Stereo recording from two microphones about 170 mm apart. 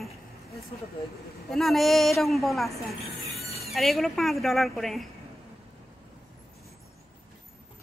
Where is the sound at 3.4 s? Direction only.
35° left (ahead or behind).